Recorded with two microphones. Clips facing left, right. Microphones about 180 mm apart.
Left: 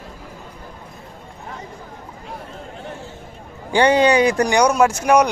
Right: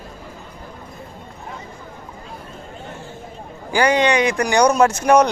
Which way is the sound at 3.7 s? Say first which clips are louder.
Left 2 dB; 30° left (ahead or behind).